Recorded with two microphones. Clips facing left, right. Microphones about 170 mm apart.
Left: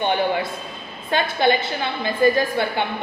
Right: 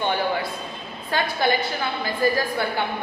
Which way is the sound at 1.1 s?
20° left (ahead or behind).